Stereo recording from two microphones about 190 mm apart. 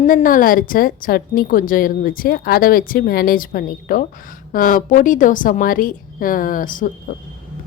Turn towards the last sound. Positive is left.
turn(degrees=45)  # may be behind; listen again after turning